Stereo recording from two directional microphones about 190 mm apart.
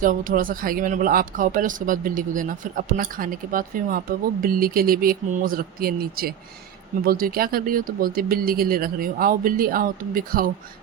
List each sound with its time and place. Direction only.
0.0 s speech: 45° right (ahead or behind)